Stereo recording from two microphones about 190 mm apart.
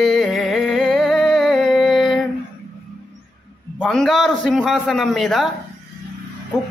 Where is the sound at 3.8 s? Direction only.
Centre (ahead or behind).